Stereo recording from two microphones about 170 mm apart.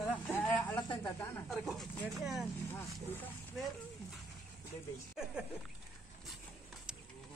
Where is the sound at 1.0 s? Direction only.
15° left (ahead or behind).